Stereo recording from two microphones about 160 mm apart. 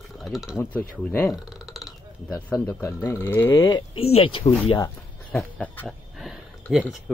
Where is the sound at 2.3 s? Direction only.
10° left (ahead or behind).